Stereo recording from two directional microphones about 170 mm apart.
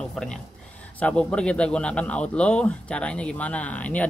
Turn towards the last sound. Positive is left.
turn(degrees=10)  # may be behind; listen again after turning